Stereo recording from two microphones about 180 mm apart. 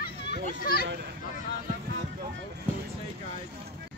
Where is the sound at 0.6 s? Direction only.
55° left (ahead or behind).